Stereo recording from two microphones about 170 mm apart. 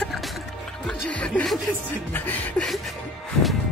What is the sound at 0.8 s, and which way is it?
Music, 5° left (ahead or behind).